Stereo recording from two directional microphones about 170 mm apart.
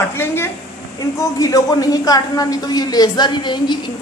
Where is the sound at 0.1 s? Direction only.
15° left (ahead or behind).